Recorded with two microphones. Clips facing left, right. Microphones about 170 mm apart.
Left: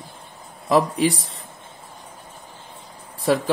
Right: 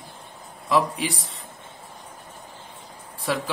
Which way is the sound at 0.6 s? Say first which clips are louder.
Left 5 dB; 40° left (ahead or behind).